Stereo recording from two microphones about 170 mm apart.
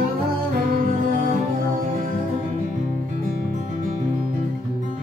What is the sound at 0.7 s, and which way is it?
Music, 50° right (ahead or behind).